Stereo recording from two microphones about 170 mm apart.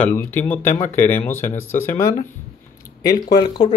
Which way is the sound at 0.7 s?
45° left (ahead or behind).